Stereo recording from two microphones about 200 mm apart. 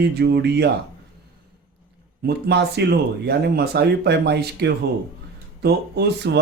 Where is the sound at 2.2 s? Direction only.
55° right (ahead or behind).